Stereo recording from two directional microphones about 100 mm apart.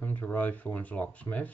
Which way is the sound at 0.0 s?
20° left (ahead or behind).